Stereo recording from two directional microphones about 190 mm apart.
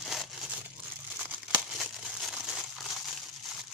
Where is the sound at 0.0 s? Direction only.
Centre (ahead or behind).